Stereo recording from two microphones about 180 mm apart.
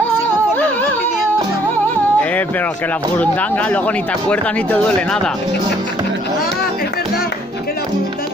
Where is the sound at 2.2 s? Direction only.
10° left (ahead or behind).